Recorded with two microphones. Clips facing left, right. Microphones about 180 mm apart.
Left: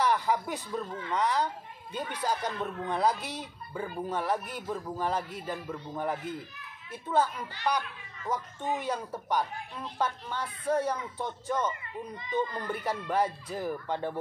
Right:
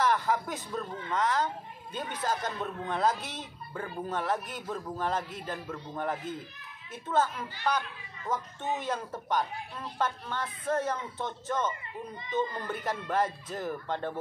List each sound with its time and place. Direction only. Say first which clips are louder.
0.0 s speech: even; 15° left (ahead or behind)